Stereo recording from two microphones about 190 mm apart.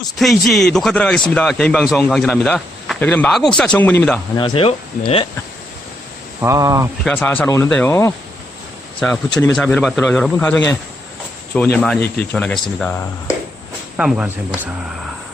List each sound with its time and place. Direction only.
0.2 s a man's voice: centre (ahead or behind)
4.4 s speech: 25° left (ahead or behind)
6.4 s speech: 15° right (ahead or behind)
7.0 s a man's voice: 5° left (ahead or behind)
13.9 s speech: 5° right (ahead or behind)